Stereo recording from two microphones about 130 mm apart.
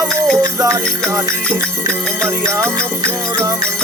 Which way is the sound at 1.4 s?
5° left (ahead or behind).